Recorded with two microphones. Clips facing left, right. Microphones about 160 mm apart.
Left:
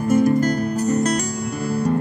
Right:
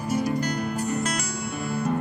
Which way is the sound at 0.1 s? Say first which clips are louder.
Left 9 dB; 50° left (ahead or behind).